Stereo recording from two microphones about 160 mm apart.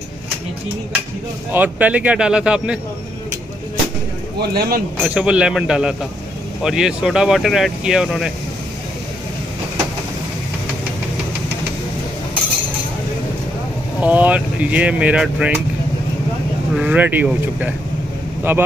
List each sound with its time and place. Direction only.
1.5 s speech: 10° right (ahead or behind)
4.4 s speech: 75° right (ahead or behind)
5.0 s speech: 5° right (ahead or behind)
14.0 s speech: 10° right (ahead or behind)
16.7 s speech: 10° right (ahead or behind)